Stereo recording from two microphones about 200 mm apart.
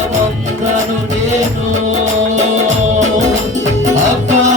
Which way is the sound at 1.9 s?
35° right (ahead or behind).